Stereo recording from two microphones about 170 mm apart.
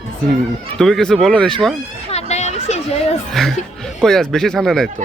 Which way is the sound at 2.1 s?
40° left (ahead or behind).